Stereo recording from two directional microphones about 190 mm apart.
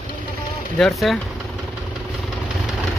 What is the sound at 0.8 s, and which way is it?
Speech, centre (ahead or behind).